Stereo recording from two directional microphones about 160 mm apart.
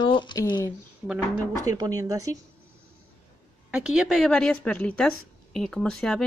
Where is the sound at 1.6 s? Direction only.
20° right (ahead or behind).